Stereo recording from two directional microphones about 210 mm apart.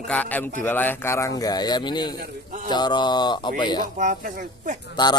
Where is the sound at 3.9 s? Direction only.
40° right (ahead or behind).